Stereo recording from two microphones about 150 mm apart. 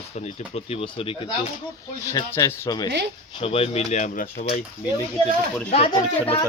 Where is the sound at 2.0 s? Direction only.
20° left (ahead or behind).